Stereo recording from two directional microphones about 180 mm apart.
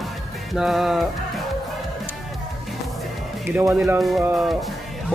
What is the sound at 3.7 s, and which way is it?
Speech, 15° right (ahead or behind).